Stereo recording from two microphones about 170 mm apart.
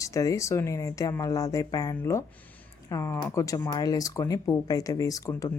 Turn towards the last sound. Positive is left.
turn(degrees=20)  # may be behind; listen again after turning